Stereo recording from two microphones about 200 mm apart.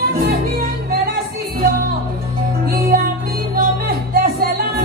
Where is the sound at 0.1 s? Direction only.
50° right (ahead or behind).